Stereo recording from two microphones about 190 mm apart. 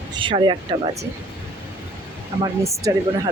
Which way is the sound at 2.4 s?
15° right (ahead or behind).